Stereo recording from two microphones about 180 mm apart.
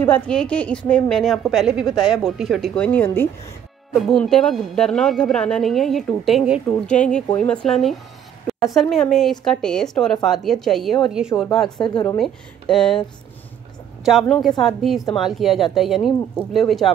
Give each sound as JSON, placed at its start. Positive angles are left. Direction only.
{"t": 0.0, "sound": "a woman's voice", "side_deg": 5}
{"t": 11.8, "sound": "speech", "side_deg": 25}
{"t": 12.2, "sound": "a woman's voice", "side_deg": 5}
{"t": 14.6, "sound": "a woman's voice", "side_deg": 0}